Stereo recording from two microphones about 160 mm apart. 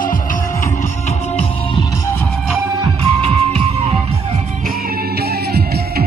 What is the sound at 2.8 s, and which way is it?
Music, 40° right (ahead or behind).